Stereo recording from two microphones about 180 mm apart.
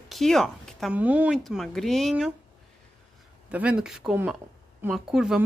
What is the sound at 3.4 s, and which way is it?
Speech, 5° right (ahead or behind).